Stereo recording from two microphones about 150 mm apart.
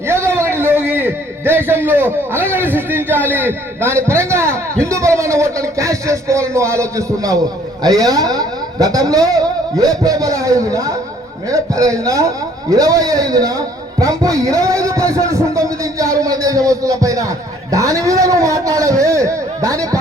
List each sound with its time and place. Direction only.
0.1 s a man's voice: 15° right (ahead or behind)
14.0 s a sound: 25° right (ahead or behind)
16.6 s a man's voice: 20° right (ahead or behind)